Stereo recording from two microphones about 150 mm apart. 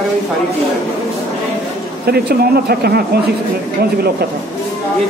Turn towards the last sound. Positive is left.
turn(degrees=-90)